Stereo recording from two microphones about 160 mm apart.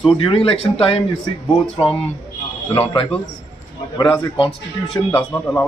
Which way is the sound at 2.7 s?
35° left (ahead or behind).